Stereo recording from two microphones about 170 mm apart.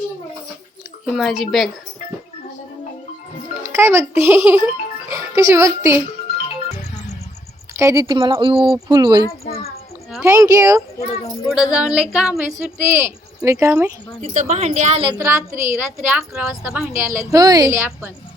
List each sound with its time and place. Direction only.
1.0 s a woman's voice: centre (ahead or behind)
3.6 s a child's voice: 15° right (ahead or behind)
7.8 s a woman's voice: 20° right (ahead or behind)
10.2 s a woman's voice: 20° right (ahead or behind)
11.5 s a woman's voice: 5° right (ahead or behind)
12.6 s a woman's voice: 15° right (ahead or behind)
14.2 s a woman's voice: 45° right (ahead or behind)
15.2 s a woman's voice: 15° right (ahead or behind)
17.1 s a woman's voice: 20° right (ahead or behind)